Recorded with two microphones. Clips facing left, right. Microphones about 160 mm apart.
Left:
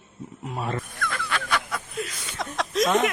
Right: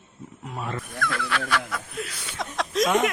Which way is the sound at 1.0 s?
Centre (ahead or behind).